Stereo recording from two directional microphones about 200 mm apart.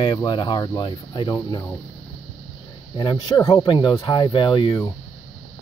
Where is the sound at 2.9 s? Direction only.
20° left (ahead or behind).